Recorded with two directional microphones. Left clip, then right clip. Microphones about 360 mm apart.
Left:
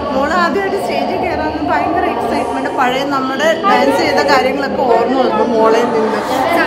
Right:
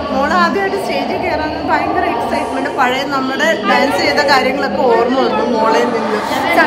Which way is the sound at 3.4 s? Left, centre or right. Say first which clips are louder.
Left 1 dB; centre.